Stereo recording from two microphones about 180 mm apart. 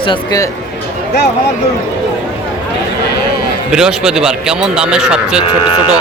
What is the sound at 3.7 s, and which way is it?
A man's voice, 5° right (ahead or behind).